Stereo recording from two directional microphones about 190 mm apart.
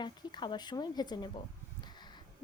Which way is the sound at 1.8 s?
20° left (ahead or behind).